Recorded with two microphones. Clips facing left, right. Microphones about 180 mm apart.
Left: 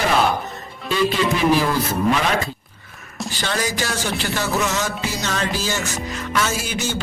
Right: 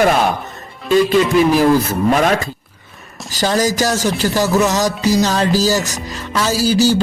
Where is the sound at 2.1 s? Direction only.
45° right (ahead or behind).